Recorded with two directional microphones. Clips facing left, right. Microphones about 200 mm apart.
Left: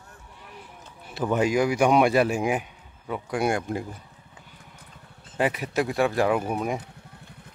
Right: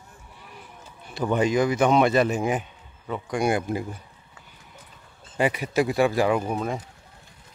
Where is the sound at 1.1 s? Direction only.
5° left (ahead or behind).